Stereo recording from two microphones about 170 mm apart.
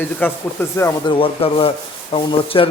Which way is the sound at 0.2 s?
10° left (ahead or behind).